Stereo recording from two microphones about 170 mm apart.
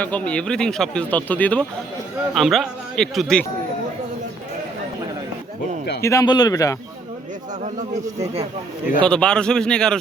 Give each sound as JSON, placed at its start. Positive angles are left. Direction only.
{"t": 0.0, "sound": "speech", "side_deg": 10}
{"t": 6.0, "sound": "a man's voice", "side_deg": 20}
{"t": 7.9, "sound": "speech", "side_deg": -20}
{"t": 9.0, "sound": "speech", "side_deg": 5}